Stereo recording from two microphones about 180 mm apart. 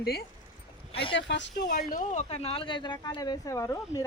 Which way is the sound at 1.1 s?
80° left.